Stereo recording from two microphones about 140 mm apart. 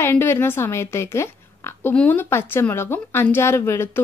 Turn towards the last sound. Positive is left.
turn(degrees=15)  # may be behind; listen again after turning